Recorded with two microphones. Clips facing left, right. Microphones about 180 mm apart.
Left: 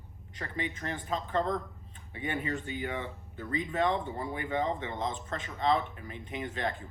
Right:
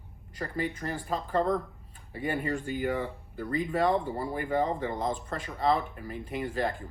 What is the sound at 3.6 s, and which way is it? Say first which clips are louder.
Speech: right 2 dB; 10° right (ahead or behind).